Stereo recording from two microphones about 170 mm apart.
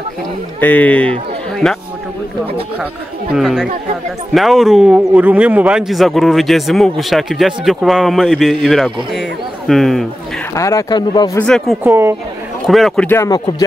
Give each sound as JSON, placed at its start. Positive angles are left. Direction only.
{"t": 0.6, "sound": "speech", "side_deg": 10}
{"t": 3.3, "sound": "speech", "side_deg": -5}
{"t": 10.5, "sound": "speech", "side_deg": 20}
{"t": 11.3, "sound": "speech", "side_deg": 5}
{"t": 11.8, "sound": "speech", "side_deg": -15}
{"t": 12.6, "sound": "speech", "side_deg": 0}